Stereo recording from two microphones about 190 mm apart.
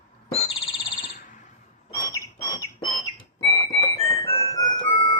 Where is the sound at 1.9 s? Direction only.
20° left (ahead or behind).